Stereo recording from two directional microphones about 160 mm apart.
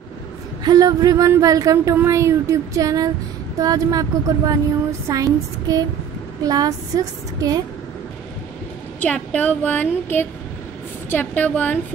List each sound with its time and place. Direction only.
0.7 s speech: 25° right (ahead or behind)
9.0 s speech: 10° left (ahead or behind)